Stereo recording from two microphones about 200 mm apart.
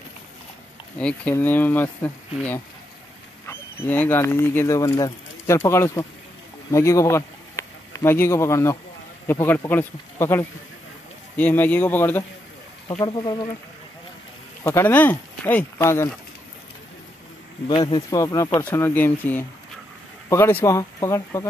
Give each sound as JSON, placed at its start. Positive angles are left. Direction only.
{"t": 0.9, "sound": "speech", "side_deg": 5}
{"t": 13.0, "sound": "speech", "side_deg": 20}
{"t": 14.6, "sound": "speech", "side_deg": 10}
{"t": 17.6, "sound": "speech", "side_deg": 20}